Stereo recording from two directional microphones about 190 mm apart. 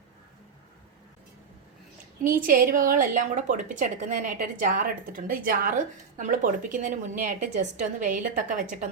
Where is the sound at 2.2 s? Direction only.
45° right (ahead or behind).